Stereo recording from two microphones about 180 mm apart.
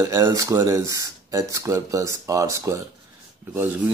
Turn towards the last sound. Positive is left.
turn(degrees=-10)  # may be behind; listen again after turning